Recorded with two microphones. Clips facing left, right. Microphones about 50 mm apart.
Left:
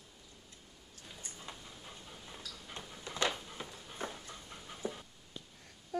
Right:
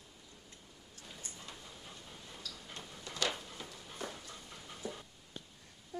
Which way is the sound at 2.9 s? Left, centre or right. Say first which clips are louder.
Left 2 dB; left.